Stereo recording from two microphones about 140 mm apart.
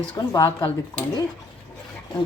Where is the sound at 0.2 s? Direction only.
30° left (ahead or behind).